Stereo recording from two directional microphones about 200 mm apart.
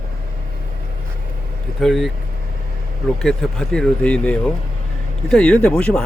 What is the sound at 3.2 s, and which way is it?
Speech, centre (ahead or behind).